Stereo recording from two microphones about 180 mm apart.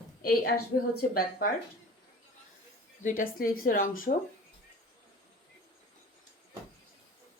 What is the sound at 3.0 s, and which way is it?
Speech, 45° left (ahead or behind).